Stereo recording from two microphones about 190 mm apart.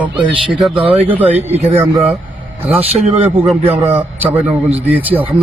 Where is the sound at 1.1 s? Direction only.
10° right (ahead or behind).